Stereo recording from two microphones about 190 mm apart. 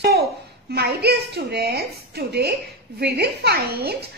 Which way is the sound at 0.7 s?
60° right (ahead or behind).